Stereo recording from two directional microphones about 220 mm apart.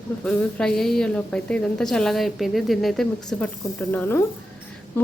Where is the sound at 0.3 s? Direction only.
5° left (ahead or behind).